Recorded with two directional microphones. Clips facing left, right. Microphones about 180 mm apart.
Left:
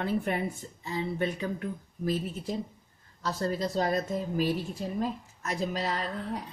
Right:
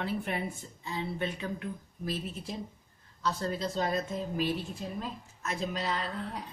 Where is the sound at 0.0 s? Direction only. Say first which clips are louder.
Left 4 dB; 45° left (ahead or behind).